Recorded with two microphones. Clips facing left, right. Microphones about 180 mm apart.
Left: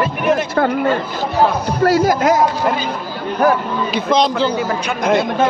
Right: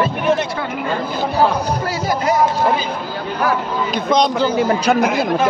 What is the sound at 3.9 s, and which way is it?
Speech, centre (ahead or behind).